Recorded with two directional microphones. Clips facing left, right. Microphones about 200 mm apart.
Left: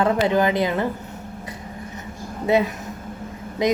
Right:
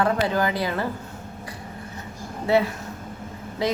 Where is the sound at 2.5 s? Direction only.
20° left (ahead or behind).